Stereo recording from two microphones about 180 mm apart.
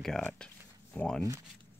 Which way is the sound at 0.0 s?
5° left (ahead or behind).